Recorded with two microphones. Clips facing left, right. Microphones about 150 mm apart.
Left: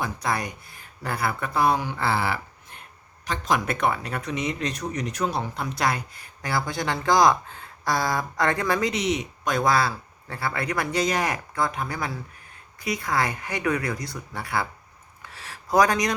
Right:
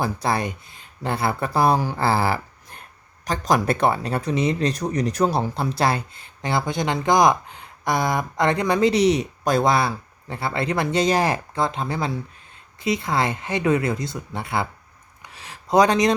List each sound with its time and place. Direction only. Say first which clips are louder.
0.0 s speech: right 4 dB; 30° right (ahead or behind)
8.9 s speech: right 8 dB; 35° right (ahead or behind)
15.2 s a sound: right 1 dB; 20° right (ahead or behind)